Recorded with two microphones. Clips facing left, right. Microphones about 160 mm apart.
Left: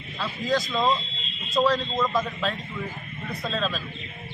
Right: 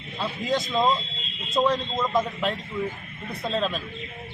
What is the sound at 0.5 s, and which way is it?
A man's voice, 20° right (ahead or behind).